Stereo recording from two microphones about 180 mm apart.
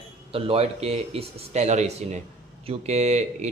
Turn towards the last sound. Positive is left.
turn(degrees=-40)  # may be behind; listen again after turning